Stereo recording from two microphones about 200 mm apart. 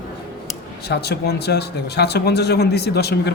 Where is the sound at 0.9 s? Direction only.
55° left (ahead or behind).